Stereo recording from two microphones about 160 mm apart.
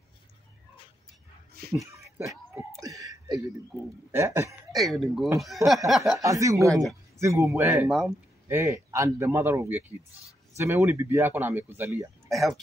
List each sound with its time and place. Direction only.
1.6 s a sound: 75° right (ahead or behind)
2.1 s speech: 20° right (ahead or behind)
3.0 s a sound: 20° right (ahead or behind)
4.1 s speech: 15° right (ahead or behind)
4.7 s speech: centre (ahead or behind)
6.1 s speech: 20° right (ahead or behind)
12.3 s speech: centre (ahead or behind)